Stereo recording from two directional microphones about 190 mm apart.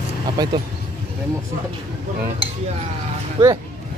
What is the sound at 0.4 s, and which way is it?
Speech, 20° right (ahead or behind).